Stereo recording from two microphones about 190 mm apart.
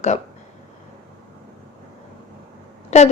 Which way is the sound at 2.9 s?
35° left (ahead or behind).